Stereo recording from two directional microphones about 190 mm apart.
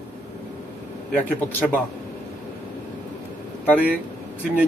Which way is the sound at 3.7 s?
10° right (ahead or behind).